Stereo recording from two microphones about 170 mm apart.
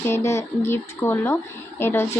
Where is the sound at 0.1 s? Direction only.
15° left (ahead or behind).